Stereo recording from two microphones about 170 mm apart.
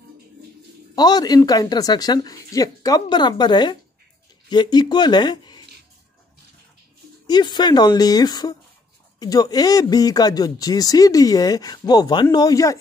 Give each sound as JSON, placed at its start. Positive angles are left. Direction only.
{"t": 0.9, "sound": "speech", "side_deg": 25}
{"t": 7.2, "sound": "speech", "side_deg": 25}